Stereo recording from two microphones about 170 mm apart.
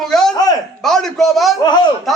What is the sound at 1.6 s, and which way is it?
Speech, 25° left (ahead or behind).